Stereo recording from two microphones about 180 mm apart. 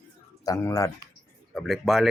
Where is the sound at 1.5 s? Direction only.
Centre (ahead or behind).